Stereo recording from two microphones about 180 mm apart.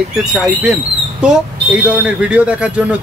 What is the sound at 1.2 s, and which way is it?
A man's voice, 5° right (ahead or behind).